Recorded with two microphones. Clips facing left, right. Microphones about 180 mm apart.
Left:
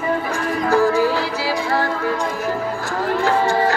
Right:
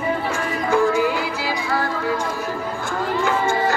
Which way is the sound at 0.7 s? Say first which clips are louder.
Left 1 dB; 35° left (ahead or behind).